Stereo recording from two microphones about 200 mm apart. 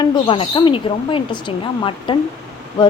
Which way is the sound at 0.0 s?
25° left (ahead or behind).